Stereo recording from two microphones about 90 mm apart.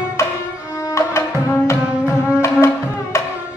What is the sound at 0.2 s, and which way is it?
Music, 35° left (ahead or behind).